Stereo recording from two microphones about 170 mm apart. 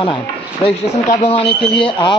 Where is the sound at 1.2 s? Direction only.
35° left (ahead or behind).